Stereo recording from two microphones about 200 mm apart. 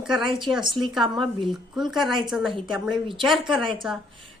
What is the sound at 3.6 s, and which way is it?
Speech, 25° right (ahead or behind).